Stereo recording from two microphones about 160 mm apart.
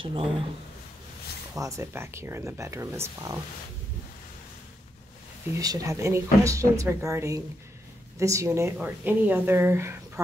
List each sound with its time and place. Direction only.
0.0 s speech: 35° right (ahead or behind)
1.5 s speech: 20° right (ahead or behind)
5.6 s speech: 20° right (ahead or behind)